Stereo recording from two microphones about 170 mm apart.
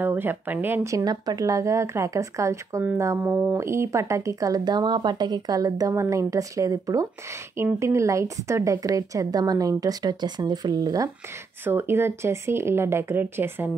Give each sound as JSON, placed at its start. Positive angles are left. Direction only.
{"t": 0.0, "sound": "a woman's voice", "side_deg": -10}